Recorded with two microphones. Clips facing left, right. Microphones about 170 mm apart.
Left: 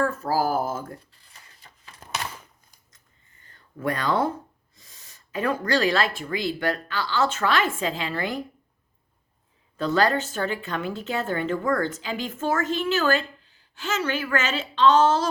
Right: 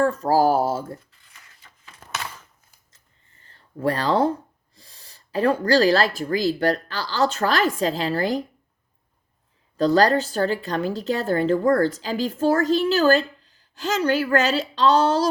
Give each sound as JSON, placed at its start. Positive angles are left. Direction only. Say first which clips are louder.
{"t": 0.0, "sound": "a woman's voice", "louder": "right 5 dB", "side_deg": -30}
{"t": 1.6, "sound": "a sound", "louder": "left 1 dB", "side_deg": 35}
{"t": 3.4, "sound": "speech", "louder": "right 4 dB", "side_deg": -30}
{"t": 9.7, "sound": "a woman's voice", "louder": "right 5 dB", "side_deg": -35}